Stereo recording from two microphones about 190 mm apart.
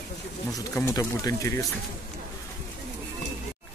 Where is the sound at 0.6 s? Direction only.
15° left (ahead or behind).